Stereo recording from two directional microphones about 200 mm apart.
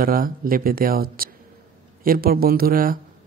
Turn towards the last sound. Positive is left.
turn(degrees=-45)  # may be behind; listen again after turning